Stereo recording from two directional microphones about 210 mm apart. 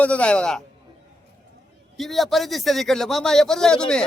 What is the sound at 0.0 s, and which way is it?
Speech, 5° left (ahead or behind).